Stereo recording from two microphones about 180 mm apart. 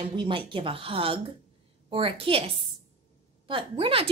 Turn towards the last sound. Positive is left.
turn(degrees=-30)  # may be behind; listen again after turning